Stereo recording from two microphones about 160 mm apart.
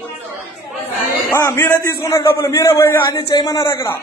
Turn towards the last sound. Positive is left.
turn(degrees=20)  # may be behind; listen again after turning